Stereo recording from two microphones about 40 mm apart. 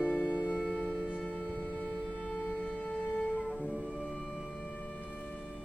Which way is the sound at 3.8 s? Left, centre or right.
Centre.